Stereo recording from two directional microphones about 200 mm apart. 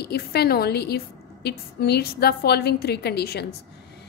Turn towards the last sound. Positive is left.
turn(degrees=55)  # may be behind; listen again after turning